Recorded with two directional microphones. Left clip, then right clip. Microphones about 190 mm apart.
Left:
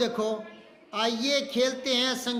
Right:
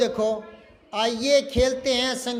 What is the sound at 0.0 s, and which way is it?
A man's voice, 20° right (ahead or behind).